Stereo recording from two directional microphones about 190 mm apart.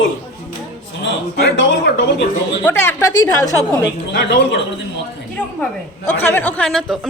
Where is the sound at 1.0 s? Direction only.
65° left (ahead or behind).